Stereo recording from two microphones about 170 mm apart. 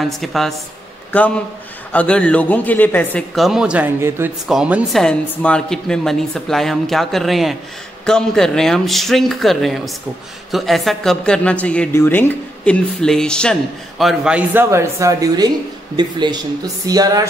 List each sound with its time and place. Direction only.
0.0 s a man's voice: centre (ahead or behind)
5.0 s speech: 5° left (ahead or behind); by 17.3 s 20° right (ahead or behind)